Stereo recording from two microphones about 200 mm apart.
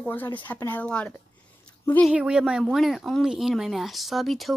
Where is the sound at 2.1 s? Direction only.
5° right (ahead or behind).